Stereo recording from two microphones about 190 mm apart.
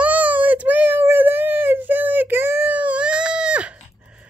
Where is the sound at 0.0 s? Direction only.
10° right (ahead or behind).